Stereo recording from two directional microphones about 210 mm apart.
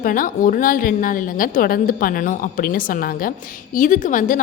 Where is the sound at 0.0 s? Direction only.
40° left (ahead or behind).